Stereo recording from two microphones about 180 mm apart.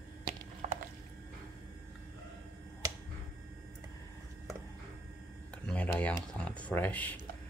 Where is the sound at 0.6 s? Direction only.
45° right (ahead or behind).